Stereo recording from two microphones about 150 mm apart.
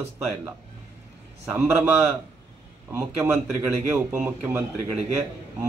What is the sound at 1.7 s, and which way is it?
Speech, centre (ahead or behind).